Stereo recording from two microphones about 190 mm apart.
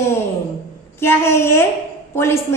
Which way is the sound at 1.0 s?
10° left (ahead or behind).